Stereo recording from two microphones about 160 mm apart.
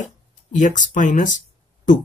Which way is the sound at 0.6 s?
50° left (ahead or behind).